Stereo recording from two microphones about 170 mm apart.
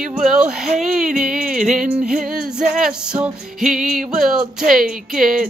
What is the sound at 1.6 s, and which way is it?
Music, 50° right (ahead or behind).